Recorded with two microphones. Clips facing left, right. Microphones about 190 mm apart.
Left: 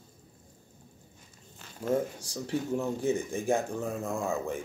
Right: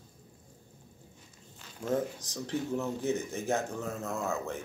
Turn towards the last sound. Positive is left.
turn(degrees=15)  # may be behind; listen again after turning